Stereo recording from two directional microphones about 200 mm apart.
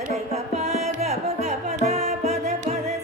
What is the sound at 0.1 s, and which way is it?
Music, 35° right (ahead or behind).